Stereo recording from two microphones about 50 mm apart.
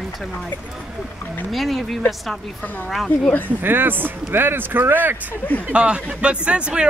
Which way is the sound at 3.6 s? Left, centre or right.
Right.